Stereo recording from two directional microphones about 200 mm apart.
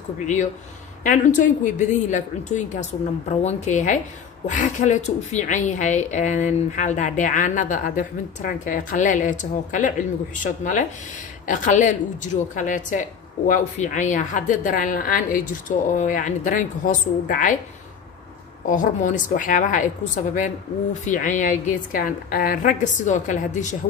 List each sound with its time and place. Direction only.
1.0 s a woman's voice: 40° left (ahead or behind)
18.7 s a woman's voice: 40° left (ahead or behind)